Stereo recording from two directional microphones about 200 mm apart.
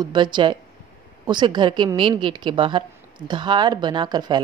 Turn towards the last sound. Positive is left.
turn(degrees=-20)  # may be behind; listen again after turning